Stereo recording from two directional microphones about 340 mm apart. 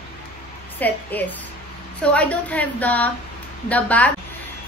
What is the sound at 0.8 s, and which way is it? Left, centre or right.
A woman's voice, centre.